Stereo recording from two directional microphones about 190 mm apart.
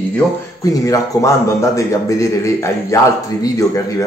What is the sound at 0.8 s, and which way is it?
A man's voice, 15° left (ahead or behind).